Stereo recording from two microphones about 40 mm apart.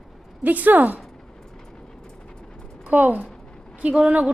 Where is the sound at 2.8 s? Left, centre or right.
Right.